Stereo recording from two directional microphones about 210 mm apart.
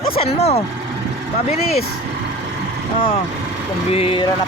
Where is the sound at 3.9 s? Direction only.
25° left (ahead or behind).